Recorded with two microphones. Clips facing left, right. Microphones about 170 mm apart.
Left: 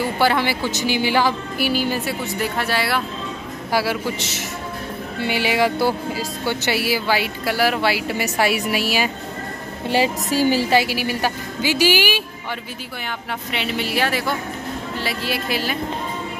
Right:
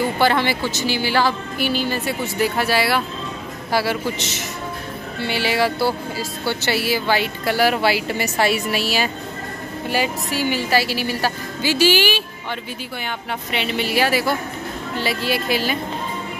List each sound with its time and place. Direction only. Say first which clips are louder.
0.2 s speech: even; 5° left (ahead or behind)
0.7 s speech: left 1 dB; 20° left (ahead or behind)
2.4 s speech: right 4 dB; 5° right (ahead or behind)
3.7 s speech: even; 5° left (ahead or behind)
5.2 s speech: left 1 dB; 15° left (ahead or behind)
9.8 s a woman's voice: left 3 dB; 25° left (ahead or behind)
10.3 s a woman's voice: left 5 dB; 40° left (ahead or behind)
10.7 s speech: left 1 dB; 15° left (ahead or behind)
13.5 s speech: right 2 dB; centre (ahead or behind)